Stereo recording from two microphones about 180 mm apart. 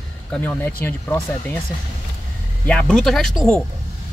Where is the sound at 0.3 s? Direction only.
10° left (ahead or behind).